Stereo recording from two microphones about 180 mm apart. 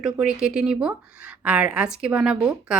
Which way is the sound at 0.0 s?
5° right (ahead or behind).